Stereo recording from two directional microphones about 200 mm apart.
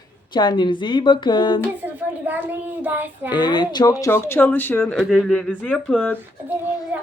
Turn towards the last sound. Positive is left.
turn(degrees=-10)  # may be behind; listen again after turning